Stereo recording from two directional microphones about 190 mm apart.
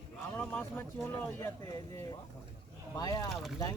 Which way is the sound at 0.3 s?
10° left (ahead or behind).